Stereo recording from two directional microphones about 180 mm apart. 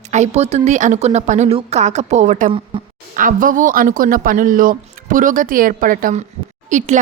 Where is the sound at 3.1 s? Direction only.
50° right (ahead or behind).